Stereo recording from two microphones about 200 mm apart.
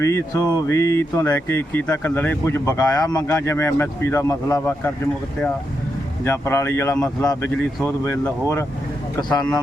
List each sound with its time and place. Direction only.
0.0 s speech: 15° left (ahead or behind)
6.2 s speech: 10° left (ahead or behind)